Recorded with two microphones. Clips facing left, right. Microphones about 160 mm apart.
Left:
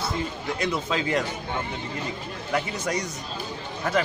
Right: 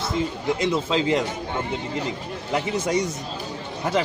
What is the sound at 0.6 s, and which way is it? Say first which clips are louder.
Speech: right 3 dB; 25° right (ahead or behind).